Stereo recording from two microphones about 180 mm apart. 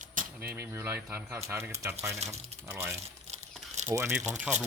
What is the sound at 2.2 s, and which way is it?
Speech, 35° right (ahead or behind).